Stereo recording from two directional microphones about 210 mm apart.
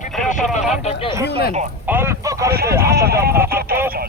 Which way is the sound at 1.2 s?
50° left (ahead or behind).